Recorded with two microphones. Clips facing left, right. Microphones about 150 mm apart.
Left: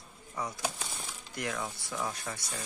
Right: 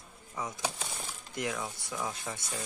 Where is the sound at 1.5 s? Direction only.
Centre (ahead or behind).